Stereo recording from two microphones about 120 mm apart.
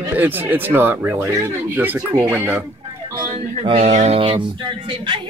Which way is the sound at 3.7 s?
75° right (ahead or behind).